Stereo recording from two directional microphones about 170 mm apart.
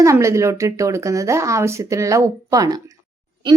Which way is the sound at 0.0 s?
15° right (ahead or behind).